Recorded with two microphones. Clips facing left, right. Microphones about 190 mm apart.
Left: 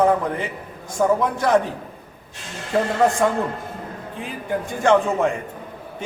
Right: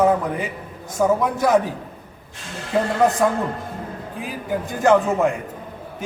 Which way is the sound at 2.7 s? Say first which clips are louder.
Even; 5° right (ahead or behind).